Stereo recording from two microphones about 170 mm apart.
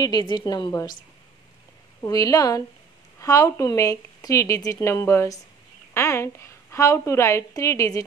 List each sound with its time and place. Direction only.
0.0 s speech: 25° left (ahead or behind)
2.0 s a woman's voice: 20° left (ahead or behind)